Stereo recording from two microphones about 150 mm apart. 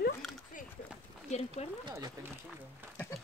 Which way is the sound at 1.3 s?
45° left (ahead or behind).